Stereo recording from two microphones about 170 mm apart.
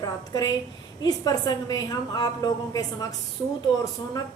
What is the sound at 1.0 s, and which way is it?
A woman's voice, 25° left (ahead or behind).